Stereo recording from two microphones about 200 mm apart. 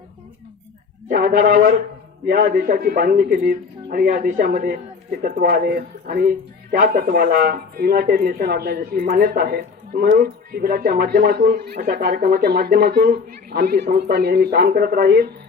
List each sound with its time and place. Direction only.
1.0 s speech: 45° right (ahead or behind)